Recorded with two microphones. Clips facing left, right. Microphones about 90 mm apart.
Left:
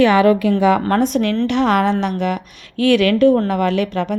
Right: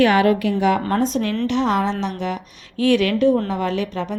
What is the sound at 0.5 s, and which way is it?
A woman's voice, 70° left (ahead or behind).